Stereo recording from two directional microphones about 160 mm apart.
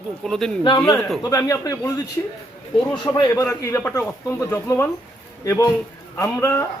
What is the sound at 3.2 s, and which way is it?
Speech, 20° left (ahead or behind).